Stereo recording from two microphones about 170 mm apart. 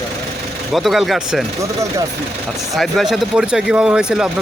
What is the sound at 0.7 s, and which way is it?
Speech, centre (ahead or behind).